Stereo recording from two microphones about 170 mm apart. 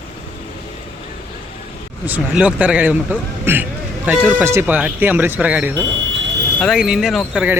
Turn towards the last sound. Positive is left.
turn(degrees=0)  # may be behind; listen again after turning